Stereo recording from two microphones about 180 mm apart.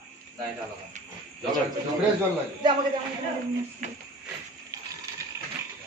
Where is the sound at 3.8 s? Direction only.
45° right (ahead or behind).